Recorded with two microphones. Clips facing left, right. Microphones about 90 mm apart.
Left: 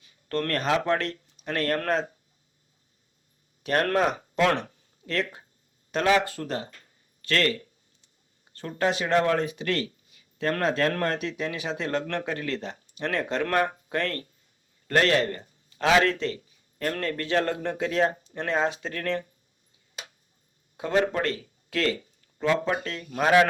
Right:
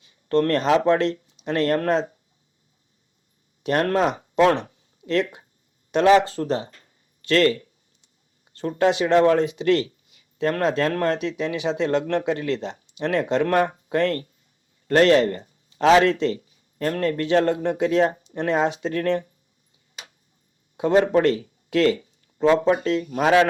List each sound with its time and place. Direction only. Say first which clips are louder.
0.0 s speech: right 9 dB; 30° right (ahead or behind)
3.6 s a man's voice: right 3 dB; 30° right (ahead or behind)
9.4 s speech: right 6 dB; 40° left (ahead or behind)
9.6 s speech: right 8 dB; 30° right (ahead or behind)
10.2 s a sound: right 4 dB; 30° right (ahead or behind)
10.8 s a man's voice: right 4 dB; 30° right (ahead or behind)
20.7 s speech: right 7 dB; 30° right (ahead or behind)